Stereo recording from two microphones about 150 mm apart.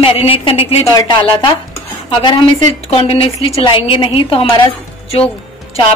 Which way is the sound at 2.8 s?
40° left (ahead or behind).